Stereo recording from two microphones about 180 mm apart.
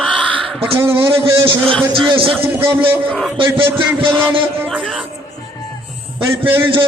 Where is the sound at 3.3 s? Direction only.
30° right (ahead or behind).